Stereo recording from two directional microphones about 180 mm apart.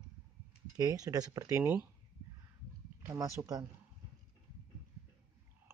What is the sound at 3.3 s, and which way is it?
Speech, 20° right (ahead or behind).